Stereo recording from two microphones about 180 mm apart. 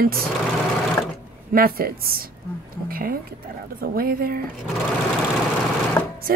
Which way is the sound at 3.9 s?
55° right (ahead or behind).